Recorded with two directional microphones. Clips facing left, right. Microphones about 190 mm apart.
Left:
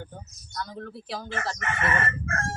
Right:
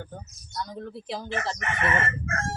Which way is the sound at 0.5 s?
15° right (ahead or behind).